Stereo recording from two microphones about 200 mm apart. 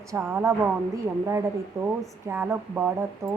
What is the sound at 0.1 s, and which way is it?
Speech, 10° right (ahead or behind).